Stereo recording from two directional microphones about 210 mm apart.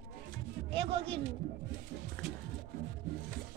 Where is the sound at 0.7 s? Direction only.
25° right (ahead or behind).